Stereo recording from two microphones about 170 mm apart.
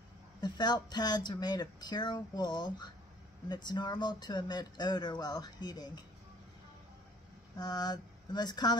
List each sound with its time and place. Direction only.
0.4 s speech: 25° left (ahead or behind)
7.5 s speech: 25° left (ahead or behind)